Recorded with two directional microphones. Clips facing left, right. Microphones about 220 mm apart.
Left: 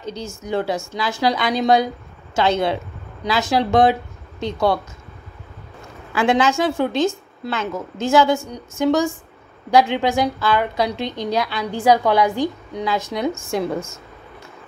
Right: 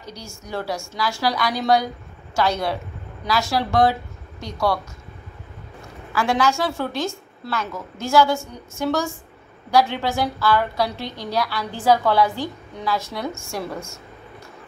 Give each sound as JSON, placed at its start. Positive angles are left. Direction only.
{"t": 0.0, "sound": "a woman's voice", "side_deg": 25}
{"t": 6.1, "sound": "a woman's voice", "side_deg": 20}